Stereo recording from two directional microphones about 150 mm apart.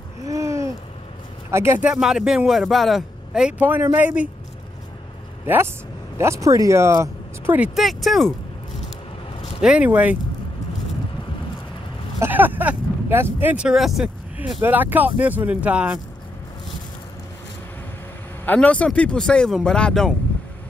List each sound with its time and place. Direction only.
0.2 s babbling: 20° right (ahead or behind)
1.5 s speech: 15° right (ahead or behind)
1.9 s a man's voice: 5° right (ahead or behind)
6.1 s speech: 20° right (ahead or behind)
7.5 s a man's voice: 5° right (ahead or behind)
9.6 s speech: 5° right (ahead or behind)
12.2 s speech: 15° right (ahead or behind)
18.4 s a man's voice: 10° left (ahead or behind)